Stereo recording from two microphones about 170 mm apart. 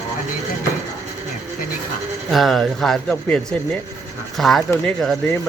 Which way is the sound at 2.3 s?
Centre (ahead or behind).